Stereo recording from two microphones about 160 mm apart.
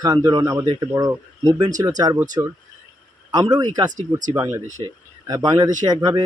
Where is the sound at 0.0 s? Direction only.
20° right (ahead or behind).